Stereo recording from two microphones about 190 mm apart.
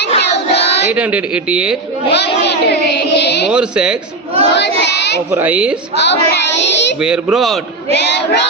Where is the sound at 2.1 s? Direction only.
60° left (ahead or behind).